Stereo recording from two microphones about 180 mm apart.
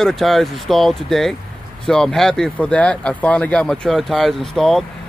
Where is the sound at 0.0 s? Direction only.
Centre (ahead or behind).